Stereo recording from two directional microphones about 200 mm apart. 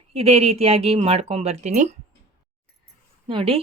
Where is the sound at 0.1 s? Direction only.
30° right (ahead or behind).